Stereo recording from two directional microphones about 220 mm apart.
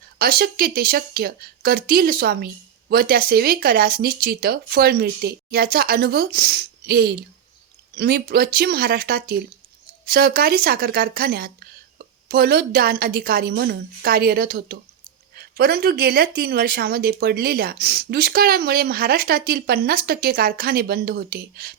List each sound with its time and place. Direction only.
0.2 s speech: 45° right (ahead or behind)